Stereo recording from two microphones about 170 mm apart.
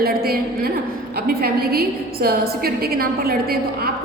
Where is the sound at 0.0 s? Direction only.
65° right (ahead or behind).